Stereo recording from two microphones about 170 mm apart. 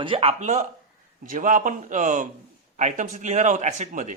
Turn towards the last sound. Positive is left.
turn(degrees=-45)  # may be behind; listen again after turning